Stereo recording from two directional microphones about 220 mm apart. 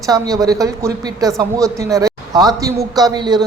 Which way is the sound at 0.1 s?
15° right (ahead or behind).